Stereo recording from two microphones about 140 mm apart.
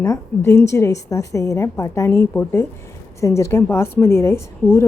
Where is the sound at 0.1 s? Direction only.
20° left (ahead or behind).